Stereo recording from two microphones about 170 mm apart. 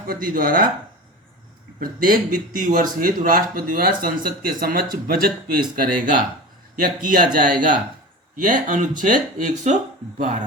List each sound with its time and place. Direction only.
0.1 s speech: 60° right (ahead or behind)
1.8 s speech: 55° right (ahead or behind)